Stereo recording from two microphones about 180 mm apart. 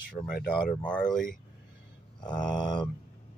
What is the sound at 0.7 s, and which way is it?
Speech, 5° left (ahead or behind).